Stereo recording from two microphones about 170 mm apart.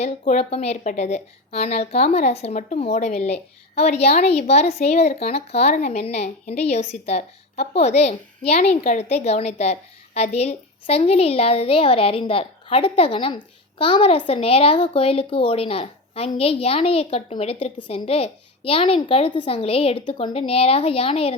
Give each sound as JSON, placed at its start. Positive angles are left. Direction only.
{"t": 0.0, "sound": "speech", "side_deg": 40}